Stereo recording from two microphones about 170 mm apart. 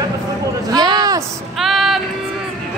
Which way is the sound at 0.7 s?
25° right (ahead or behind).